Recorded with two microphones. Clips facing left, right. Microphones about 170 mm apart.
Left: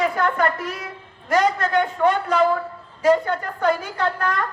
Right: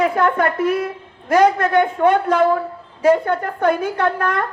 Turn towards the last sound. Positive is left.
turn(degrees=-55)  # may be behind; listen again after turning